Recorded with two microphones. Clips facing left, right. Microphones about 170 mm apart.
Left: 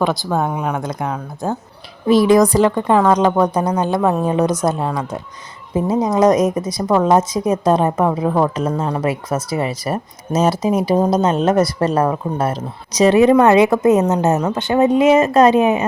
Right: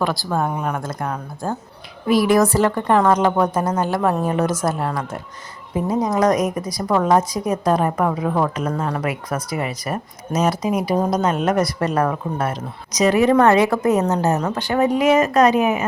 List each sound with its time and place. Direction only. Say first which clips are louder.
0.3 s speech: left 2 dB; 5° left (ahead or behind)
2.0 s a woman's voice: left 4 dB; 20° left (ahead or behind)